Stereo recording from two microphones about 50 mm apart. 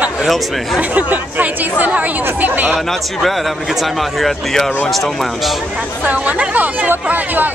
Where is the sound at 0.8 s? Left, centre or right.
Right.